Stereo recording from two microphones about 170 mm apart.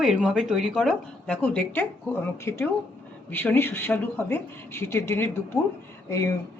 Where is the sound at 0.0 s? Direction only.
5° right (ahead or behind).